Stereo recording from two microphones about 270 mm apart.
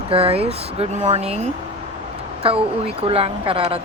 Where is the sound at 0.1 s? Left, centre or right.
Right.